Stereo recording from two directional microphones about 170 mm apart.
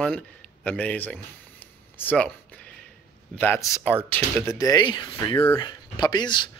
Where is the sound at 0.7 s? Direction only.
10° left (ahead or behind).